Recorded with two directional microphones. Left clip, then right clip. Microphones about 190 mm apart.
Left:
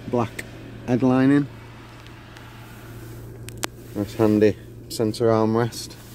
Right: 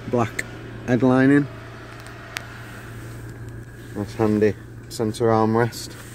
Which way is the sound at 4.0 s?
20° left (ahead or behind).